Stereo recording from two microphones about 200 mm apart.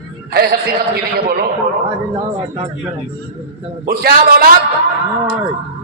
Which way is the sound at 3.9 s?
50° right (ahead or behind).